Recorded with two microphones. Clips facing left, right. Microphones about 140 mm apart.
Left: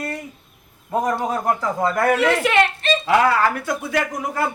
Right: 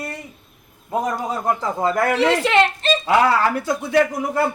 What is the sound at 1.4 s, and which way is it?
A man's voice, 20° right (ahead or behind).